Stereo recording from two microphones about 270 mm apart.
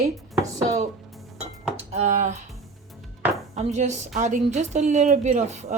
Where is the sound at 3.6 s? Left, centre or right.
Right.